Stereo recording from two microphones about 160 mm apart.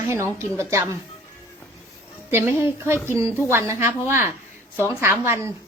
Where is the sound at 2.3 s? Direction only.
15° right (ahead or behind).